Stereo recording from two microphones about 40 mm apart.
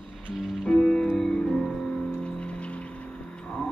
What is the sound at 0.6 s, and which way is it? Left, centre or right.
Music, left.